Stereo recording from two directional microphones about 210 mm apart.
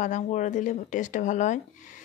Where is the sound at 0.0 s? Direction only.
35° left (ahead or behind).